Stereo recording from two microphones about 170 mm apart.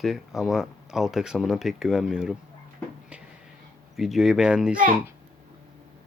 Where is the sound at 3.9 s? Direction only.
Centre (ahead or behind).